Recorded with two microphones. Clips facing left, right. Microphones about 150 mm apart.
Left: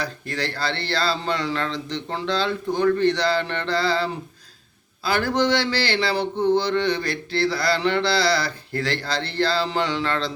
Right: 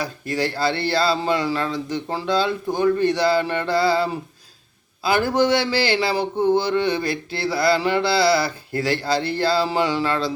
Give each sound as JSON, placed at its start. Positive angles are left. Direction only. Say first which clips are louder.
{"t": 0.0, "sound": "a man's voice", "louder": "right 4 dB", "side_deg": -10}
{"t": 5.2, "sound": "a man's voice", "louder": "right 1 dB", "side_deg": -10}
{"t": 6.3, "sound": "a sound", "louder": "right 1 dB", "side_deg": -50}
{"t": 6.6, "sound": "a man's voice", "louder": "right 1 dB", "side_deg": -10}